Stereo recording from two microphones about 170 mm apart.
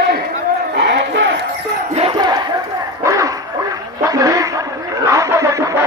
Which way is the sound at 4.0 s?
20° right (ahead or behind).